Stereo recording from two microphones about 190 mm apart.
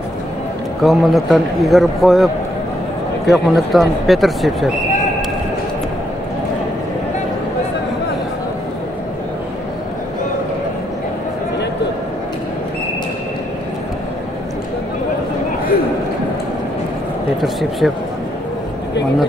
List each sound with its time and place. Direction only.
0.8 s a man's voice: centre (ahead or behind)
17.4 s speech: centre (ahead or behind)